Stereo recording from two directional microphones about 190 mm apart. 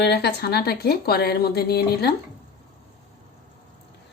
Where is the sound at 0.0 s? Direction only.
60° left (ahead or behind).